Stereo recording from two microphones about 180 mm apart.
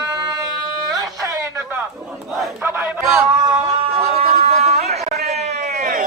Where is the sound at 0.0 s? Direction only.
20° right (ahead or behind).